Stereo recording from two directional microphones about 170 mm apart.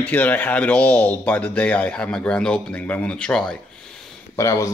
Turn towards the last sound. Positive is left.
turn(degrees=20)  # may be behind; listen again after turning